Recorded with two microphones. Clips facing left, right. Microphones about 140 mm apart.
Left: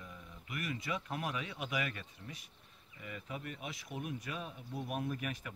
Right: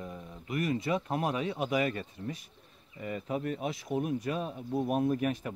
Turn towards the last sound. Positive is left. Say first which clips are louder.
# right 10 dB
turn(degrees=-35)  # may be behind; listen again after turning